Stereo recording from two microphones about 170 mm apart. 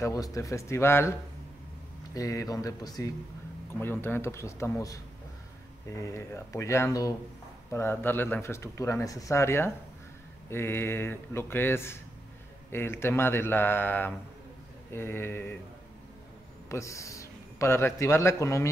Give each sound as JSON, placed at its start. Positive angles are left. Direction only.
{"t": 0.0, "sound": "speech", "side_deg": 20}
{"t": 2.1, "sound": "speech", "side_deg": 20}
{"t": 16.6, "sound": "a man's voice", "side_deg": 15}